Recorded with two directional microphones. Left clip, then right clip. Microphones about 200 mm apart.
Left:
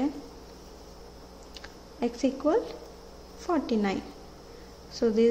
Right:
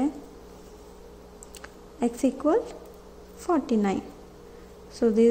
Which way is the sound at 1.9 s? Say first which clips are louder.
Right 2 dB; 15° right (ahead or behind).